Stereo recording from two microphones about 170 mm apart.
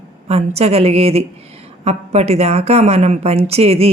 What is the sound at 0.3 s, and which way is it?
A woman's voice, 40° right (ahead or behind).